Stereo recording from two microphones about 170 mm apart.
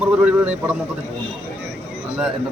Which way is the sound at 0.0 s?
5° right (ahead or behind).